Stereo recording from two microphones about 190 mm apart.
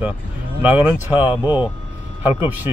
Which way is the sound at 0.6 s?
10° right (ahead or behind).